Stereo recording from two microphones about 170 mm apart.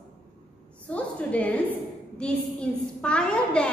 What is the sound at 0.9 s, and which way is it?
A woman's voice, 10° left (ahead or behind).